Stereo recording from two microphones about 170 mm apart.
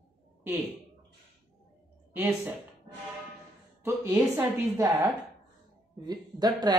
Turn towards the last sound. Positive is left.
turn(degrees=-25)  # may be behind; listen again after turning